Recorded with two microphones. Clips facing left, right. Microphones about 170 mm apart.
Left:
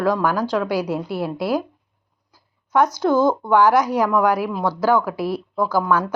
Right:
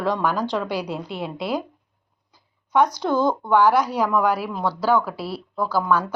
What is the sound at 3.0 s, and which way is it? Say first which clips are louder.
Speech: left 4 dB; 5° left (ahead or behind).